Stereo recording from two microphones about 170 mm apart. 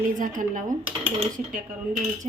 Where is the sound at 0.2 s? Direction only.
50° right (ahead or behind).